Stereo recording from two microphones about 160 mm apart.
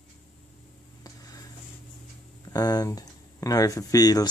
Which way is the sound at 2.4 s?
25° left (ahead or behind).